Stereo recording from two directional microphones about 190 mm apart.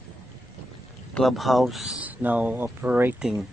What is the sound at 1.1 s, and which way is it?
Speech, centre (ahead or behind).